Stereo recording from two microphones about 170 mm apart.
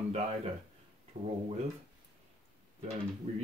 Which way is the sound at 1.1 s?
45° right (ahead or behind).